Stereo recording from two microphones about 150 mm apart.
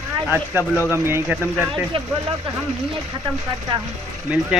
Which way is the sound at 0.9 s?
15° right (ahead or behind).